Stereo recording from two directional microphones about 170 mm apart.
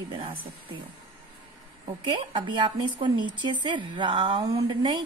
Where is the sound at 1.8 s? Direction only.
30° right (ahead or behind).